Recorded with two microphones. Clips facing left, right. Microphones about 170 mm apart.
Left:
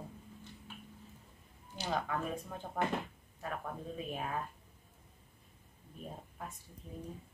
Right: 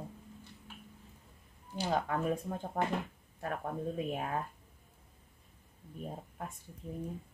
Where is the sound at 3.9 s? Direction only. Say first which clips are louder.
Right 4 dB; 60° right (ahead or behind).